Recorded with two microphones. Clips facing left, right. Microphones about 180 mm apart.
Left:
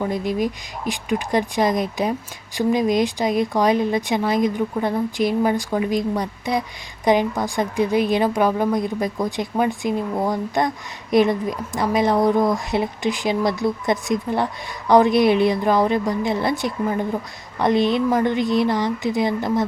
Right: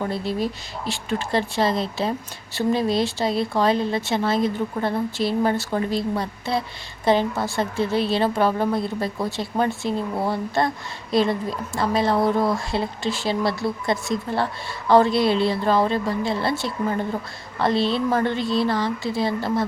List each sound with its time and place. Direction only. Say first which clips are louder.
0.0 s speech: left 3 dB; 15° left (ahead or behind)